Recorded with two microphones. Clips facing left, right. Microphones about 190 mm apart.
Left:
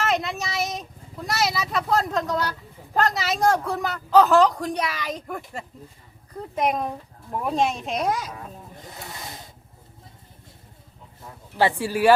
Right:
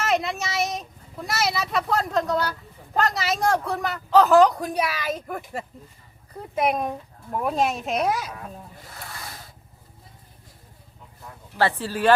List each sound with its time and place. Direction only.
0.0 s speech: centre (ahead or behind)
8.8 s snake: 20° left (ahead or behind)
11.5 s speech: 15° left (ahead or behind)